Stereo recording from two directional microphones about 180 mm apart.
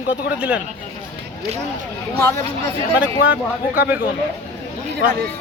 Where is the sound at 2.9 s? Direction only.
10° right (ahead or behind).